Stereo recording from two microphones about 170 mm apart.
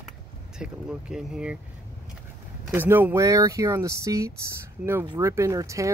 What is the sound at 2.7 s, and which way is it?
Speech, 10° right (ahead or behind).